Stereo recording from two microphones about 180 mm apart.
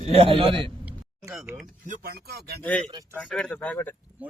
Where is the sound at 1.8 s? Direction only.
60° right (ahead or behind).